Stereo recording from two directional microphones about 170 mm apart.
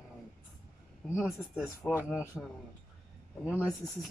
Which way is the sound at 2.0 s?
15° left (ahead or behind).